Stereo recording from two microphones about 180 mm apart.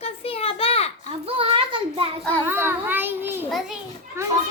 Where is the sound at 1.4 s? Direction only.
30° right (ahead or behind).